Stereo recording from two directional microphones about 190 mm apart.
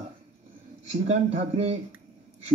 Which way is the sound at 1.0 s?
35° right (ahead or behind).